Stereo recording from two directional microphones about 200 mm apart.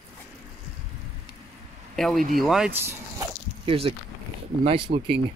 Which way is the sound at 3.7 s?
25° right (ahead or behind).